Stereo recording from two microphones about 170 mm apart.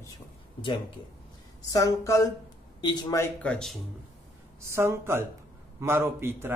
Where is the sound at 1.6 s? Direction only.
20° left (ahead or behind).